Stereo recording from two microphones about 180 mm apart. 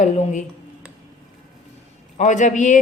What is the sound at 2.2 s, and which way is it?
Speech, 45° left (ahead or behind).